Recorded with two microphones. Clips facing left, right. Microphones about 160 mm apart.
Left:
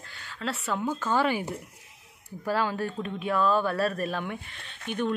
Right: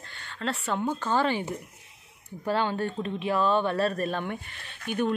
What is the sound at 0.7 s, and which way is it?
Speech, 20° right (ahead or behind).